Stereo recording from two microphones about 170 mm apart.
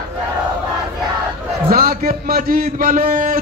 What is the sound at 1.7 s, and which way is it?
A man's voice, 60° right (ahead or behind).